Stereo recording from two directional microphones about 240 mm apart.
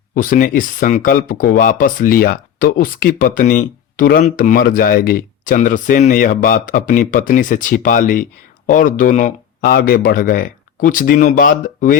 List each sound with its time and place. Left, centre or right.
0.1 s speech: left